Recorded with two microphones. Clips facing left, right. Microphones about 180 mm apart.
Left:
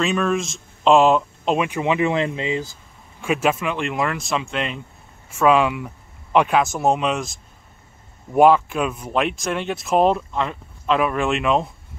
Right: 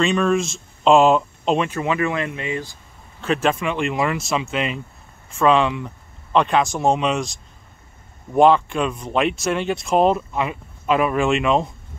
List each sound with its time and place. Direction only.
0.0 s speech: centre (ahead or behind)
1.7 s speech: 15° left (ahead or behind)
3.2 s speech: 10° left (ahead or behind)
8.4 s speech: 5° left (ahead or behind)